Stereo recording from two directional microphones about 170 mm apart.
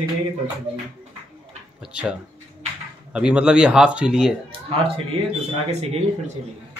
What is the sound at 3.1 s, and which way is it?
Speech, 5° right (ahead or behind).